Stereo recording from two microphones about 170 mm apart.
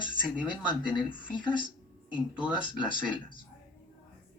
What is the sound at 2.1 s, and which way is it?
Speech, 10° right (ahead or behind).